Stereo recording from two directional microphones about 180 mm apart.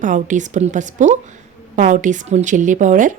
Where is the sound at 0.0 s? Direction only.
45° right (ahead or behind).